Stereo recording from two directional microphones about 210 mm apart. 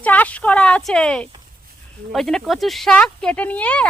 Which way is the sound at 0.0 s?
5° left (ahead or behind).